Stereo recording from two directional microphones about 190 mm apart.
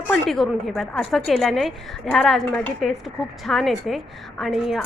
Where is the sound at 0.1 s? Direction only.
Centre (ahead or behind).